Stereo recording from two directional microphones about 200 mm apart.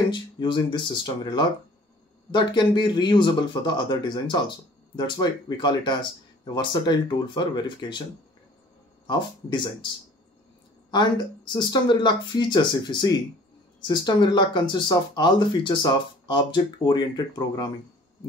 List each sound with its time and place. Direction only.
0.1 s speech: 20° left (ahead or behind)
9.0 s speech: 25° left (ahead or behind)
10.9 s speech: 20° left (ahead or behind)